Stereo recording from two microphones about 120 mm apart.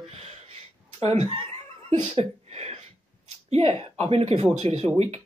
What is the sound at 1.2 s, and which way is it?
Chuckle, 50° right (ahead or behind).